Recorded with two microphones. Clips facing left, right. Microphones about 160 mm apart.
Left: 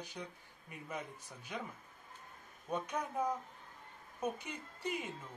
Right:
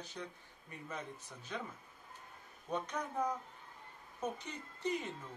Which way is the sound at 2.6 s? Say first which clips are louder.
Left 1 dB; 10° left (ahead or behind).